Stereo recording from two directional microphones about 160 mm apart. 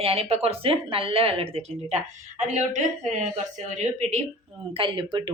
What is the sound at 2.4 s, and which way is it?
A woman's voice, 50° right (ahead or behind).